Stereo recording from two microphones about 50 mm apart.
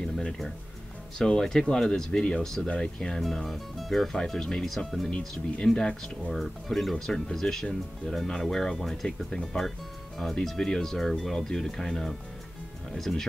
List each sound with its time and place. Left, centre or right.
0.0 s music: centre
1.1 s speech: centre
5.8 s speech: centre
6.3 s speech: centre